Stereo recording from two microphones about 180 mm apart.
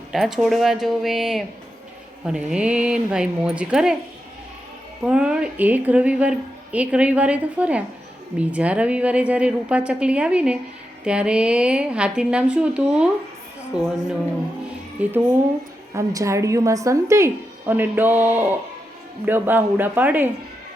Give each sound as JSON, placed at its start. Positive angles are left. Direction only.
{"t": 0.1, "sound": "a woman's voice", "side_deg": 0}
{"t": 5.0, "sound": "a woman's voice", "side_deg": -5}
{"t": 15.0, "sound": "a woman's voice", "side_deg": -10}